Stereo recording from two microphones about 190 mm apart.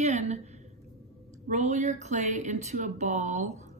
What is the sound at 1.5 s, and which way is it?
A woman's voice, 40° right (ahead or behind).